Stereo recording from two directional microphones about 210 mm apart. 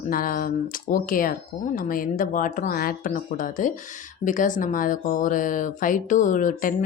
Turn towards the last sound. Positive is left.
turn(degrees=40)  # may be behind; listen again after turning